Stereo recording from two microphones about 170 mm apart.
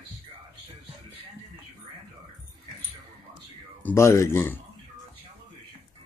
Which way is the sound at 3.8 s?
15° left (ahead or behind).